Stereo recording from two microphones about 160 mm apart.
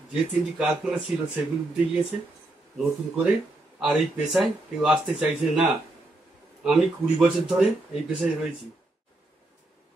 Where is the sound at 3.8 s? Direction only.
5° right (ahead or behind).